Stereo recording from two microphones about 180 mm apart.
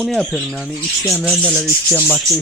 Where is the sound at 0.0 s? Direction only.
Centre (ahead or behind).